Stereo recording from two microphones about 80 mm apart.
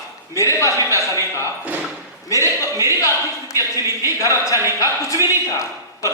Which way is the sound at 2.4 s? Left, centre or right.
Right.